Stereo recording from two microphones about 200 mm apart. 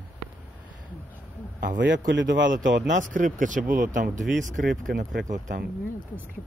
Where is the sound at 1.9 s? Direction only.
60° right (ahead or behind).